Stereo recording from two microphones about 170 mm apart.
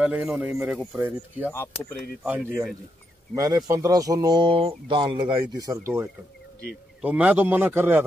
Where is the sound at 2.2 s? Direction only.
5° right (ahead or behind).